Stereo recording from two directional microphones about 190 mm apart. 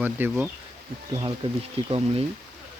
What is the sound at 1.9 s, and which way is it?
Speech, 30° right (ahead or behind).